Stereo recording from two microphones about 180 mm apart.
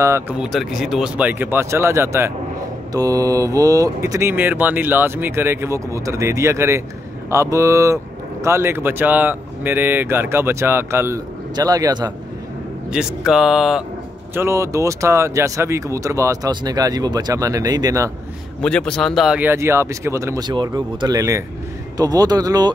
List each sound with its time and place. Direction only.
0.0 s speech: 15° right (ahead or behind)
0.4 s speech: centre (ahead or behind); by 12.1 s 20° right (ahead or behind)
12.9 s speech: 5° right (ahead or behind)
14.3 s speech: 15° right (ahead or behind)
18.6 s speech: 5° left (ahead or behind); by 22.7 s 20° right (ahead or behind)